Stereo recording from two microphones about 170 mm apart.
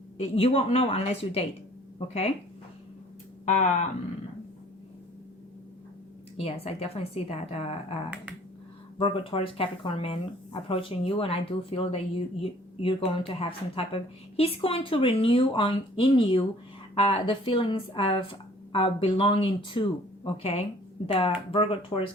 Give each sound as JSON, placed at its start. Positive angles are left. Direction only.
{"t": 0.2, "sound": "speech", "side_deg": 35}
{"t": 3.4, "sound": "speech", "side_deg": 45}
{"t": 6.3, "sound": "speech", "side_deg": 35}
{"t": 9.0, "sound": "speech", "side_deg": 30}